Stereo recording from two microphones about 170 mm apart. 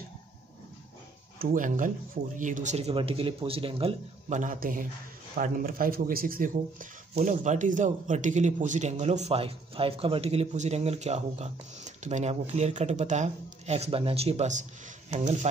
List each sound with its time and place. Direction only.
1.4 s speech: 50° right (ahead or behind); by 3.9 s 30° right (ahead or behind)
4.3 s speech: 50° right (ahead or behind)